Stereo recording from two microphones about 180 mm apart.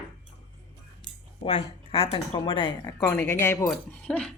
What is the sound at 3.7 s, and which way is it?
Speech, 5° left (ahead or behind).